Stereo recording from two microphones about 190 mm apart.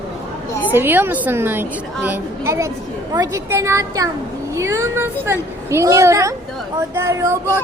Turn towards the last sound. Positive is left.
turn(degrees=-15)  # may be behind; listen again after turning